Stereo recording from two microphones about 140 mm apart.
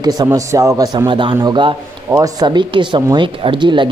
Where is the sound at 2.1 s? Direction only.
25° right (ahead or behind).